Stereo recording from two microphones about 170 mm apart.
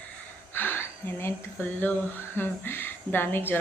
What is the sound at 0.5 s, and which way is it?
Speech, 10° left (ahead or behind).